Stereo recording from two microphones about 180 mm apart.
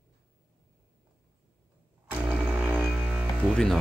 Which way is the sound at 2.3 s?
10° right (ahead or behind).